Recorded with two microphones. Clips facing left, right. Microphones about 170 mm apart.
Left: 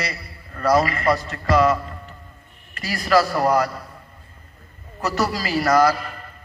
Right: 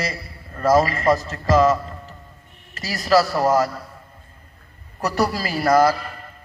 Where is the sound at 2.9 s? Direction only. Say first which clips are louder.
Right 1 dB; 20° right (ahead or behind).